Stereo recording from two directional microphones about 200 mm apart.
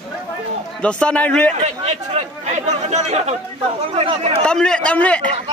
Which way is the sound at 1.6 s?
35° right (ahead or behind).